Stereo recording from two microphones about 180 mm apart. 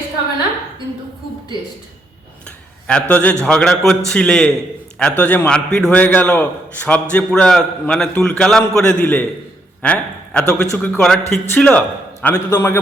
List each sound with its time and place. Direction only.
2.8 s a man's voice: 5° left (ahead or behind)
12.3 s a man's voice: 20° left (ahead or behind)